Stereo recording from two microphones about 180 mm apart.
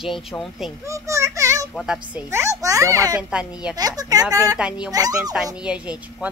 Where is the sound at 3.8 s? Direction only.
20° right (ahead or behind).